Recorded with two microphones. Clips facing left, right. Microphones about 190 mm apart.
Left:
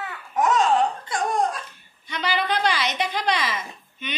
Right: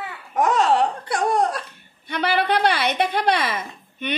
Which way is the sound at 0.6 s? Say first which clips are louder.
Right 1 dB; 70° right (ahead or behind).